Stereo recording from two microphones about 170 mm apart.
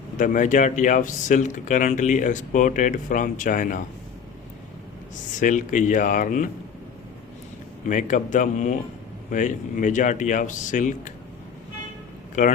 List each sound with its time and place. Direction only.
0.2 s speech: 50° left (ahead or behind)
5.1 s speech: 50° left (ahead or behind)
7.9 s speech: 45° left (ahead or behind)